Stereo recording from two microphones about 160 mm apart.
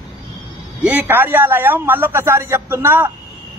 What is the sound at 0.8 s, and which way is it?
A man's voice, 10° right (ahead or behind).